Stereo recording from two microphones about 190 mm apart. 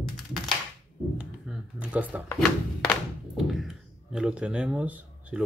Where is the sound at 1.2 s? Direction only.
5° right (ahead or behind).